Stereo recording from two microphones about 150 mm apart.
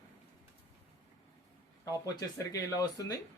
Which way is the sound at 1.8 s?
25° left (ahead or behind).